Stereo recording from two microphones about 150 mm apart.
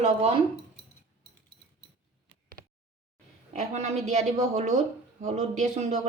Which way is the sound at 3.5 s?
50° right (ahead or behind).